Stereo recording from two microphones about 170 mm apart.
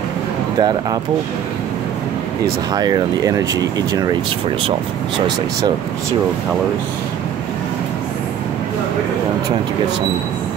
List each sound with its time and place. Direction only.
0.6 s speech: 25° right (ahead or behind)
2.7 s speech: 20° right (ahead or behind)